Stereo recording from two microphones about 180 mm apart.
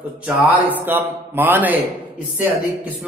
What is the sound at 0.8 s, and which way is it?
Speech, 10° right (ahead or behind).